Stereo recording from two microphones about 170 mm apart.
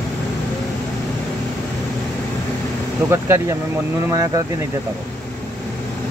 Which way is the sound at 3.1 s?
15° right (ahead or behind).